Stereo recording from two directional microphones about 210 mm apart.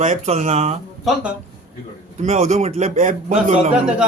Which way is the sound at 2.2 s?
30° right (ahead or behind).